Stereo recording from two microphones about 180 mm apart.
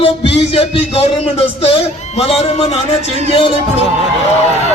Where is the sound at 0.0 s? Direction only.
30° left (ahead or behind).